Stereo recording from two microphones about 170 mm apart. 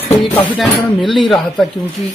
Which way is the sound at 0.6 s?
Centre (ahead or behind).